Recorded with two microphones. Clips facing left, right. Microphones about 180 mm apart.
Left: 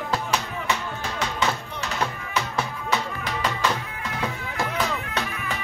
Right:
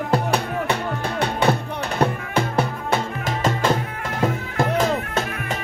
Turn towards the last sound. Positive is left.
turn(degrees=-45)  # may be behind; listen again after turning